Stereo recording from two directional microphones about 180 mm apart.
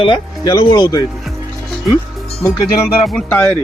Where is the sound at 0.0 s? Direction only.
25° left (ahead or behind).